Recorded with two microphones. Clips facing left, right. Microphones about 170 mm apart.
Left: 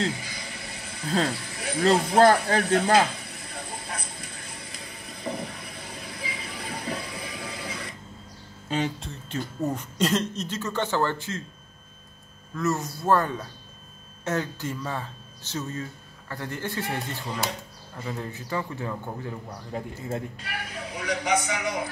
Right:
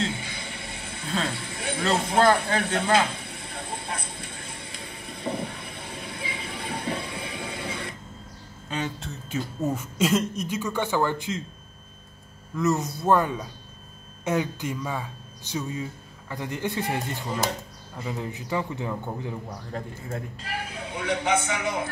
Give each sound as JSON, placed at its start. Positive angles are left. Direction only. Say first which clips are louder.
{"t": 0.0, "sound": "a sound", "louder": "left 1 dB", "side_deg": -25}
{"t": 1.2, "sound": "a man's voice", "louder": "left 1 dB", "side_deg": -25}
{"t": 3.1, "sound": "vehicle", "louder": "right 2 dB", "side_deg": -25}
{"t": 9.0, "sound": "speech", "louder": "right 2 dB", "side_deg": -10}
{"t": 12.5, "sound": "speech", "louder": "right 3 dB", "side_deg": -20}
{"t": 19.7, "sound": "a man's voice", "louder": "left 2 dB", "side_deg": 10}
{"t": 20.3, "sound": "a man's voice", "louder": "right 2 dB", "side_deg": -30}